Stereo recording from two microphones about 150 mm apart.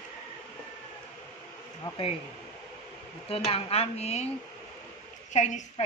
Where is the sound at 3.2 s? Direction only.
40° left (ahead or behind).